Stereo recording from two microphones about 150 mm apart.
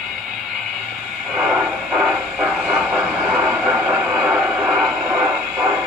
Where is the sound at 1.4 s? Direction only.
5° right (ahead or behind).